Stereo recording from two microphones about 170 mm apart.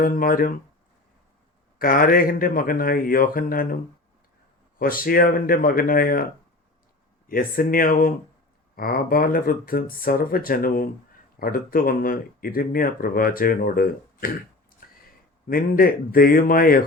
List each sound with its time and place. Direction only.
0.0 s speech: 55° left (ahead or behind)
1.8 s speech: 60° left (ahead or behind)
4.8 s speech: 55° left (ahead or behind)
7.3 s speech: 55° left (ahead or behind)
15.4 s speech: 60° left (ahead or behind)